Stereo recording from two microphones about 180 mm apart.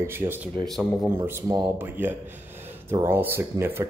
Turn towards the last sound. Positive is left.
turn(degrees=-15)  # may be behind; listen again after turning